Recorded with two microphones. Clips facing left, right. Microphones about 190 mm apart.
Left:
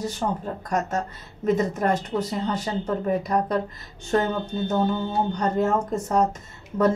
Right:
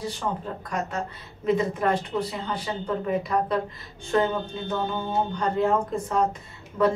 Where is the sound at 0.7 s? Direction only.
45° left (ahead or behind).